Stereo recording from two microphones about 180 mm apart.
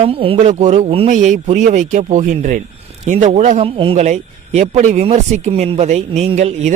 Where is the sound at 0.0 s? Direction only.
30° right (ahead or behind).